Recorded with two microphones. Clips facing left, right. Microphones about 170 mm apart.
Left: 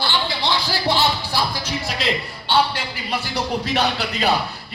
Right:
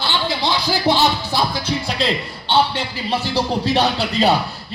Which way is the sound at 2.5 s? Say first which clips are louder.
Right 2 dB; 25° right (ahead or behind).